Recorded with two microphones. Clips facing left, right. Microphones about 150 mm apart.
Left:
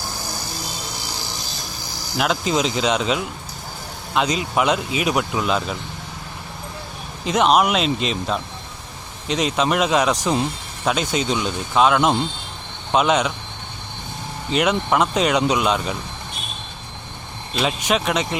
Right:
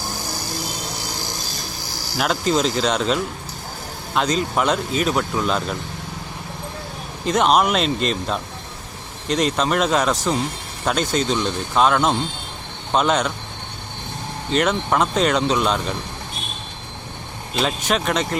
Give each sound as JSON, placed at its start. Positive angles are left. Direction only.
{"t": 2.1, "sound": "speech", "side_deg": 0}
{"t": 7.3, "sound": "speech", "side_deg": 5}
{"t": 14.5, "sound": "speech", "side_deg": 5}
{"t": 17.6, "sound": "speech", "side_deg": 5}